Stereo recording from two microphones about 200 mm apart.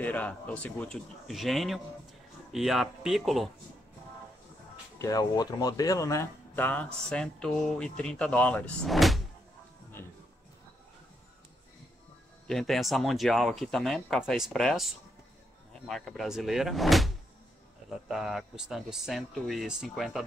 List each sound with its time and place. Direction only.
0.0 s speech: 10° left (ahead or behind)
5.0 s speech: 20° left (ahead or behind); by 9.2 s centre (ahead or behind)
10.0 s music: 10° left (ahead or behind)
12.4 s speech: centre (ahead or behind)